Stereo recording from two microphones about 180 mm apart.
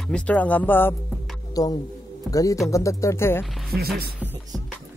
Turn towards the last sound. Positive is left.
turn(degrees=5)  # may be behind; listen again after turning